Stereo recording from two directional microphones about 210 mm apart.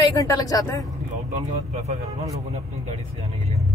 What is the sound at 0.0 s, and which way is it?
Speech, 15° left (ahead or behind).